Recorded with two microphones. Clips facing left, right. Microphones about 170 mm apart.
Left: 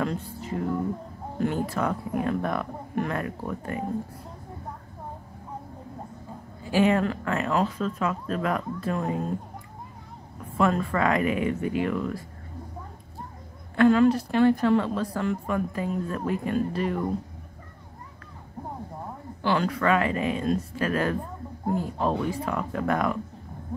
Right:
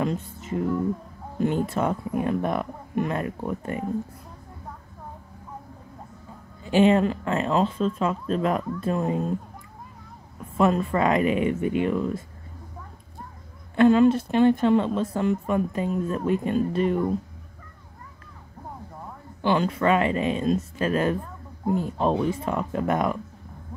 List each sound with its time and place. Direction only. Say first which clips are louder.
0.0 s speech: right 2 dB; 20° right (ahead or behind)
6.6 s speech: right 3 dB; 25° right (ahead or behind)
10.6 s speech: right 2 dB; 20° right (ahead or behind)
13.7 s speech: right 2 dB; 20° right (ahead or behind)
19.4 s speech: right 2 dB; 20° right (ahead or behind)